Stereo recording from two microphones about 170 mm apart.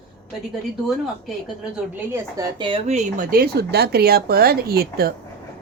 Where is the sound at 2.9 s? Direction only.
45° right (ahead or behind); by 5.1 s 65° right (ahead or behind).